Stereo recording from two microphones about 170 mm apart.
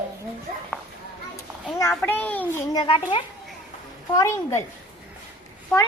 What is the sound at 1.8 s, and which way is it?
Speech, 10° left (ahead or behind).